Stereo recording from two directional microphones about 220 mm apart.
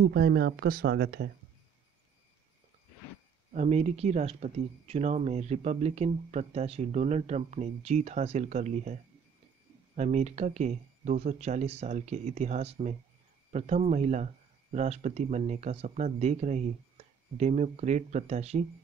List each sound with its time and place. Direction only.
0.0 s speech: 50° right (ahead or behind)
3.5 s speech: 30° right (ahead or behind)
9.9 s speech: 30° right (ahead or behind)